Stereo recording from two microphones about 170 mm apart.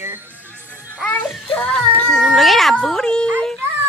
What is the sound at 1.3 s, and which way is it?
Speech, centre (ahead or behind).